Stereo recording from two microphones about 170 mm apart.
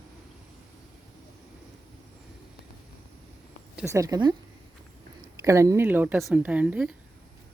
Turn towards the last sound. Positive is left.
turn(degrees=-5)  # may be behind; listen again after turning